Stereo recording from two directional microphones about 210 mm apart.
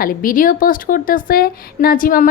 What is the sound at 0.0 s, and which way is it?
A woman's voice, 40° left (ahead or behind).